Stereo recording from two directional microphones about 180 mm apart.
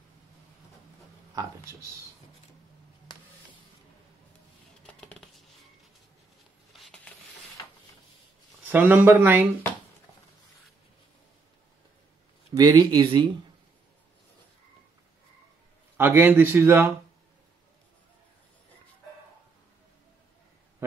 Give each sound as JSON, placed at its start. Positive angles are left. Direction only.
{"t": 1.3, "sound": "speech", "side_deg": -15}
{"t": 5.0, "sound": "music", "side_deg": 5}
{"t": 6.7, "sound": "a sound", "side_deg": 0}
{"t": 8.6, "sound": "speech", "side_deg": -10}
{"t": 12.5, "sound": "speech", "side_deg": -20}
{"t": 16.0, "sound": "speech", "side_deg": -10}